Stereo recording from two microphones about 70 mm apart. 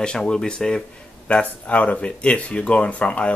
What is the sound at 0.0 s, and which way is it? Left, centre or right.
Speech, centre.